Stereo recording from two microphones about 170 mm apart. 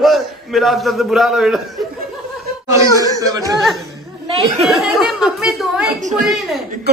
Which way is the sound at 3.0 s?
20° right (ahead or behind).